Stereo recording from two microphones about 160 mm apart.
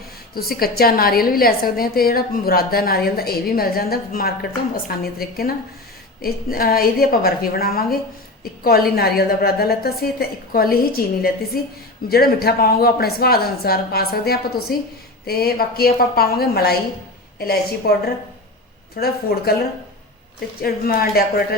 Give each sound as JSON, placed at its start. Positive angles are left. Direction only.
{"t": 0.3, "sound": "a woman's voice", "side_deg": 70}
{"t": 18.9, "sound": "a woman's voice", "side_deg": 75}
{"t": 20.6, "sound": "a woman's voice", "side_deg": 70}